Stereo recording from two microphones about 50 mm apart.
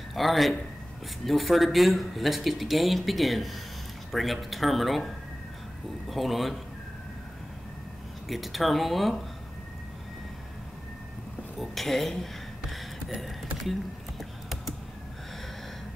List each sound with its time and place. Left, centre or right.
0.1 s speech: centre
8.3 s speech: centre
11.5 s a sound: centre